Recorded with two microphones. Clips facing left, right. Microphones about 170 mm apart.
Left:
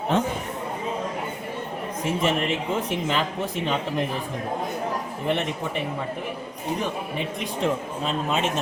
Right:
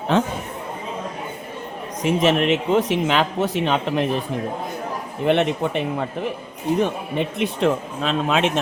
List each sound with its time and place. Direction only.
0.1 s speech: 90° right
2.0 s speech: 85° right
5.2 s a man's voice: 70° right (ahead or behind)
7.2 s speech: 75° right (ahead or behind); by 8.6 s 90° right